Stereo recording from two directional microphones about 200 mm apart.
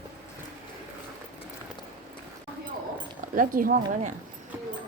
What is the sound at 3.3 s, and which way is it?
Speech, 45° right (ahead or behind).